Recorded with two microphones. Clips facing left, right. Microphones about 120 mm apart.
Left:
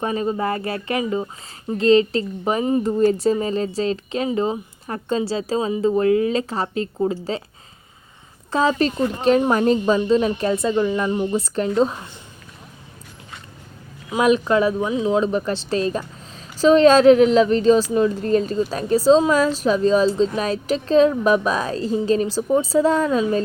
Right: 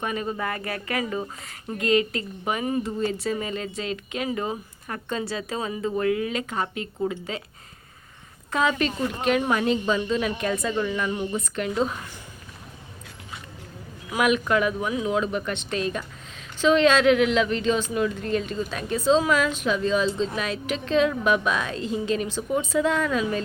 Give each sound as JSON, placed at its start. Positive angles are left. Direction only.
{"t": 0.0, "sound": "speech", "side_deg": 30}
{"t": 2.8, "sound": "a woman's voice", "side_deg": 45}
{"t": 8.4, "sound": "a woman's voice", "side_deg": 35}
{"t": 14.1, "sound": "a woman's voice", "side_deg": 30}